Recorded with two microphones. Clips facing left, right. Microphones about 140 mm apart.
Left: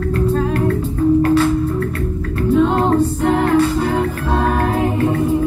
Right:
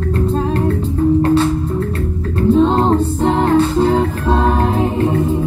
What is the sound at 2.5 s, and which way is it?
Music, 25° right (ahead or behind).